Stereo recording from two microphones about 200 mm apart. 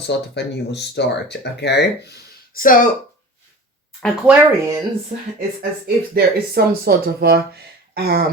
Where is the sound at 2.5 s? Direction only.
45° left (ahead or behind).